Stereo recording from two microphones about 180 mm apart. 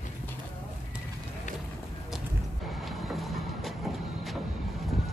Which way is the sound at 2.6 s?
Centre (ahead or behind).